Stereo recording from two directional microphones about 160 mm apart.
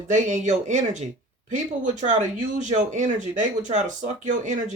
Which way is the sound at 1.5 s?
50° right (ahead or behind).